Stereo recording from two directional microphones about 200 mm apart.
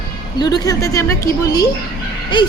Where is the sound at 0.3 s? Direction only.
20° left (ahead or behind).